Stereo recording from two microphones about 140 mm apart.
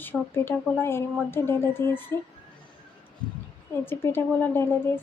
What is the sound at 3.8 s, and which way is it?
Speech, 15° left (ahead or behind).